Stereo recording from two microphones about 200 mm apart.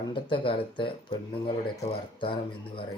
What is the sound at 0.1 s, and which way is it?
Speech, 25° left (ahead or behind).